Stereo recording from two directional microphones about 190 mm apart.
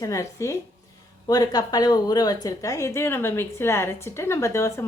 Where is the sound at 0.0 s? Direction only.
15° left (ahead or behind).